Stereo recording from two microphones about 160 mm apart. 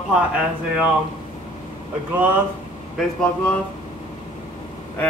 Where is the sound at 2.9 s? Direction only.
5° left (ahead or behind).